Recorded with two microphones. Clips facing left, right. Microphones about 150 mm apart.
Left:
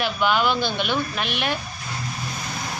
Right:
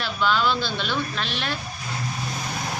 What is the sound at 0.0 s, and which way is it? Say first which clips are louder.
A woman's voice: left 2 dB; 15° left (ahead or behind).